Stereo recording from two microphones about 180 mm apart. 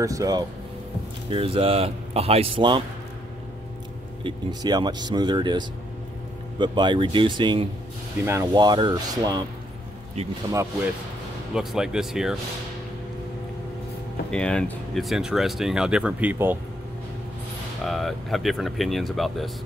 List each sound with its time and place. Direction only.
0.0 s speech: 20° right (ahead or behind)
4.2 s speech: 25° right (ahead or behind)
11.5 s speech: 5° right (ahead or behind)
14.3 s speech: 5° left (ahead or behind); by 16.5 s 10° right (ahead or behind)
17.8 s speech: centre (ahead or behind)